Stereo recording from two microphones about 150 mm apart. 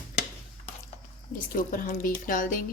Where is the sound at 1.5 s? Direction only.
70° left (ahead or behind).